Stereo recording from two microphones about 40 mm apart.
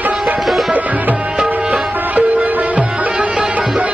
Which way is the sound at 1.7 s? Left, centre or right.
Right.